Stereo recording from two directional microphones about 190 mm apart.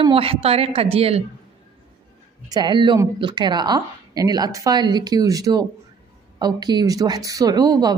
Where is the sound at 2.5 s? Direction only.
25° right (ahead or behind).